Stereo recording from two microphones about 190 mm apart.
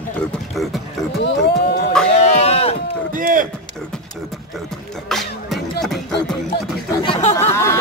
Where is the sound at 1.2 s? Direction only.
60° left (ahead or behind).